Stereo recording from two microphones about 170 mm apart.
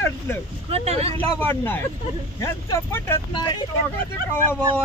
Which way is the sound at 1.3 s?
10° left (ahead or behind).